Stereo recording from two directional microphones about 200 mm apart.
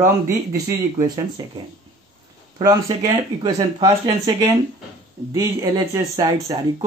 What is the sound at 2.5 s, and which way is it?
Speech, 20° right (ahead or behind).